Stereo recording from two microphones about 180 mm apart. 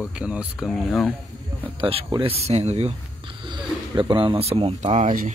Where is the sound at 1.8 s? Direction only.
30° right (ahead or behind).